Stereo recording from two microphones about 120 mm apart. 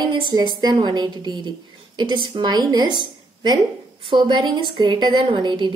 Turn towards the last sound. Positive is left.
turn(degrees=-40)  # may be behind; listen again after turning